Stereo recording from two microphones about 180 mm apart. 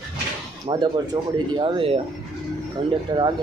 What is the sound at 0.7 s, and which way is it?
Speech, 25° right (ahead or behind).